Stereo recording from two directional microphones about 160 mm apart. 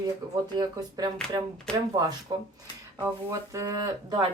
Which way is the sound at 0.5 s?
25° right (ahead or behind).